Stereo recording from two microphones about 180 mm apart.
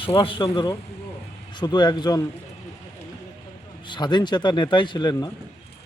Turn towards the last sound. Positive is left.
turn(degrees=25)  # may be behind; listen again after turning